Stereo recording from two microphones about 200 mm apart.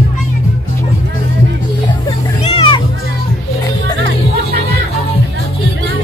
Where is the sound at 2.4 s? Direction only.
25° left (ahead or behind).